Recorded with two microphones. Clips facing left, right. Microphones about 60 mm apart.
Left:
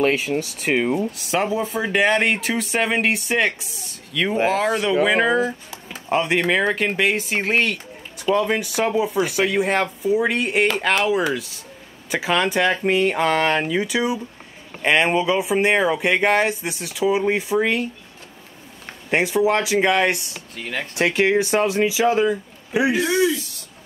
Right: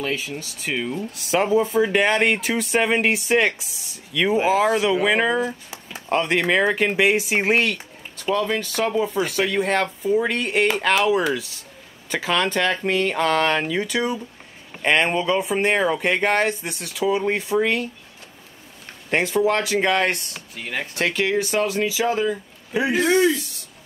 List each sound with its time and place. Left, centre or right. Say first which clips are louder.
0.0 s speech: left 7 dB; left
1.1 s speech: right 3 dB; centre
8.2 s speech: left 3 dB; left
8.6 s speech: left 1 dB; centre
19.0 s speech: left 1 dB; centre
20.5 s speech: left 1 dB; centre
20.9 s speech: left 4 dB; centre